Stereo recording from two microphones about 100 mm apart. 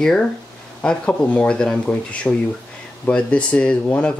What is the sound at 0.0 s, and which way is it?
Speech, 5° left (ahead or behind).